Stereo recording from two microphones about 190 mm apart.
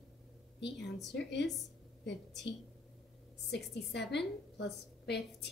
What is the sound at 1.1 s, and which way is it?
Speech, 65° left (ahead or behind).